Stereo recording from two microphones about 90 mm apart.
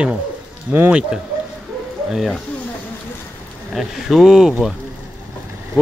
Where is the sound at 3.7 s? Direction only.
Centre (ahead or behind).